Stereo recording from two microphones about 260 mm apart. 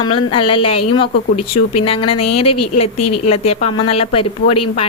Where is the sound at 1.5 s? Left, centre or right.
Left.